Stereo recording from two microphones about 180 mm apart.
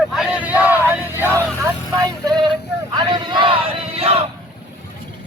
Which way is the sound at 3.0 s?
25° right (ahead or behind).